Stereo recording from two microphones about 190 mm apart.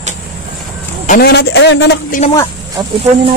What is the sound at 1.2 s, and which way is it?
Speech, 60° left (ahead or behind).